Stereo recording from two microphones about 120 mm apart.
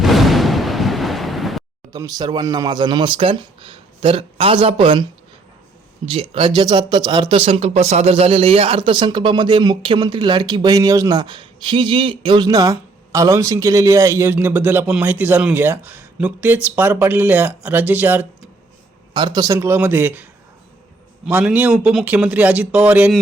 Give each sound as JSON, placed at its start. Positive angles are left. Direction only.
{"t": 0.0, "sound": "thunder", "side_deg": 0}
{"t": 1.9, "sound": "speech", "side_deg": -30}
{"t": 6.1, "sound": "speech", "side_deg": -50}
{"t": 19.1, "sound": "speech", "side_deg": -40}
{"t": 21.2, "sound": "speech", "side_deg": -10}